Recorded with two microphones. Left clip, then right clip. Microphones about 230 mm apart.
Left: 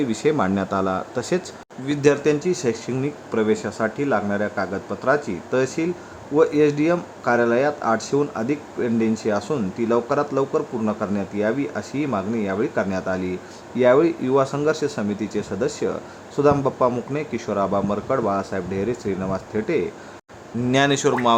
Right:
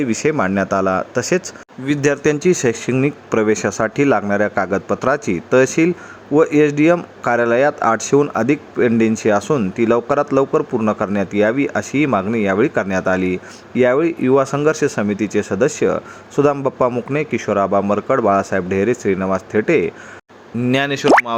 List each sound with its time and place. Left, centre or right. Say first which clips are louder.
0.0 s speech: right 3 dB; centre